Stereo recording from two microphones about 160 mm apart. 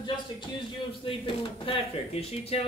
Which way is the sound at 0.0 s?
30° left (ahead or behind).